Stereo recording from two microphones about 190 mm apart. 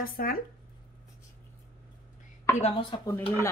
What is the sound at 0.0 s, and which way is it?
Speech, 50° left (ahead or behind).